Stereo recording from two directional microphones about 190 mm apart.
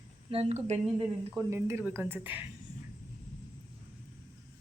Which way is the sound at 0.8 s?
10° right (ahead or behind).